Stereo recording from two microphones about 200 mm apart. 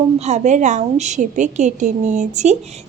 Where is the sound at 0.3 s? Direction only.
35° right (ahead or behind).